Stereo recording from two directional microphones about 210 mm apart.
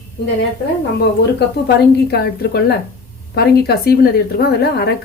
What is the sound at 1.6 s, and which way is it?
A woman's voice, 50° left (ahead or behind).